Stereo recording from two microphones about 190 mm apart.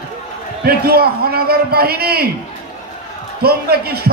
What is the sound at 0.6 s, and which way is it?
A man's voice, 55° right (ahead or behind).